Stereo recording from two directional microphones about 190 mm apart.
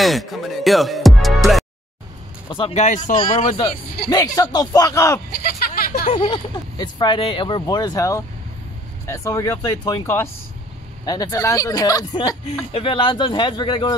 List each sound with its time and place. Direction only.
0.0 s speech: centre (ahead or behind)
2.5 s speech: 30° left (ahead or behind)
3.2 s speech: 25° left (ahead or behind)
5.3 s a sound: 50° left (ahead or behind)
6.0 s speech: 25° left (ahead or behind)